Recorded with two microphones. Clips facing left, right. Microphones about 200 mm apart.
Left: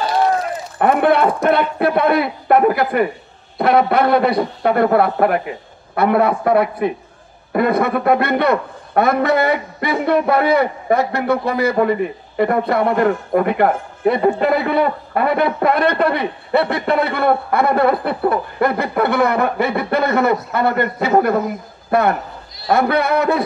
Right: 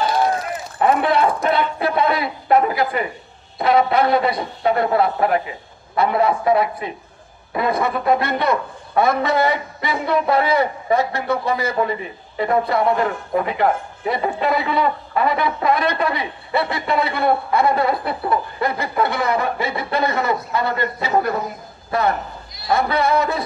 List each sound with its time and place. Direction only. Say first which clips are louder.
0.7 s a man's voice: left 3 dB; 55° left (ahead or behind)